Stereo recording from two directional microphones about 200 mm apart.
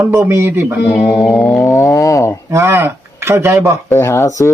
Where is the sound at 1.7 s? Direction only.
15° left (ahead or behind).